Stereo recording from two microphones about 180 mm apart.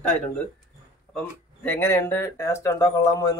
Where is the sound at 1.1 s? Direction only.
10° left (ahead or behind).